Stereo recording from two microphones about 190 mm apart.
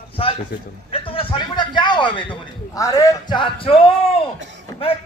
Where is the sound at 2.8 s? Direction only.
15° left (ahead or behind).